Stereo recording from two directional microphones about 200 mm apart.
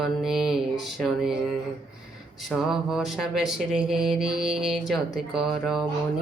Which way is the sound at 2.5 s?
Centre (ahead or behind).